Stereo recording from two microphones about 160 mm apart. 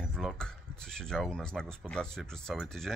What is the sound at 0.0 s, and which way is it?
Speech, centre (ahead or behind).